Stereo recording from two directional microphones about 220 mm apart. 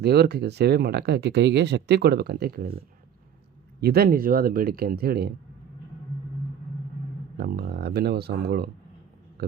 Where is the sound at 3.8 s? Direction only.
45° right (ahead or behind).